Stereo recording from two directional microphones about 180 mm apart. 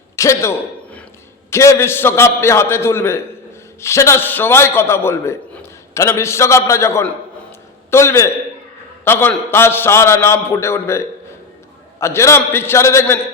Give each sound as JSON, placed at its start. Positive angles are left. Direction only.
{"t": 0.2, "sound": "a man's voice", "side_deg": 15}